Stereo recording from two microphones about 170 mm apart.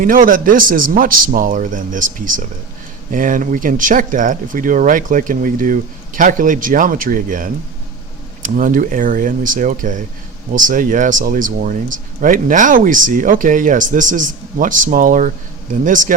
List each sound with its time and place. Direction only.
0.0 s speech: 50° right (ahead or behind)